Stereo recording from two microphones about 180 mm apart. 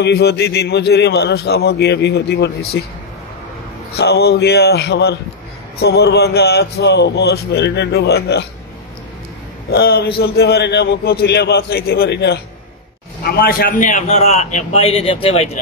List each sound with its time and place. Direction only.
0.0 s a man's voice: 65° left (ahead or behind)
3.9 s a man's voice: 65° left (ahead or behind)
9.7 s a man's voice: 60° left (ahead or behind); by 15.6 s 35° left (ahead or behind)